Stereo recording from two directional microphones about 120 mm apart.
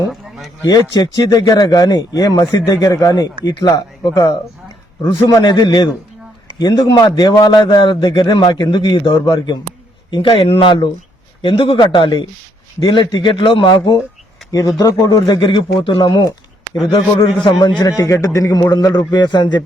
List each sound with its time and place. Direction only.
0.6 s a man's voice: 35° left (ahead or behind)
14.8 s speech: 30° left (ahead or behind)
15.3 s a man's voice: 45° left (ahead or behind)
17.4 s speech: 40° left (ahead or behind)